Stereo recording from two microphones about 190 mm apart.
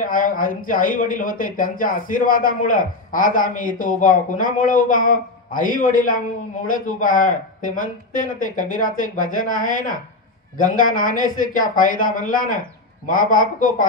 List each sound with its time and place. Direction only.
0.0 s speech: 45° left (ahead or behind)